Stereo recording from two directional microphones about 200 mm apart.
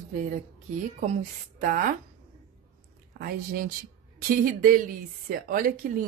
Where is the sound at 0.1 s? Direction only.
40° right (ahead or behind).